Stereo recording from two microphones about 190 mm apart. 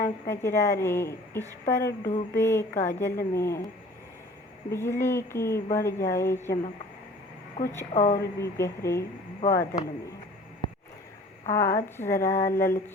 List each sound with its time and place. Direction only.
0.0 s a woman's voice: 15° left (ahead or behind)
4.7 s a woman's voice: 15° left (ahead or behind)
7.6 s a woman's voice: 15° left (ahead or behind)
7.9 s a woman's voice: 35° left (ahead or behind)
8.2 s a woman's voice: 15° left (ahead or behind)
10.6 s a sound: 25° left (ahead or behind)
11.4 s a woman's voice: 15° left (ahead or behind)